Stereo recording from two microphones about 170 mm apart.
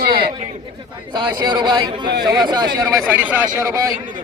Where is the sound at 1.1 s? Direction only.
25° right (ahead or behind).